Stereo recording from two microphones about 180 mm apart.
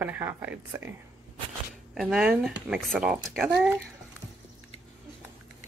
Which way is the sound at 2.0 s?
5° right (ahead or behind).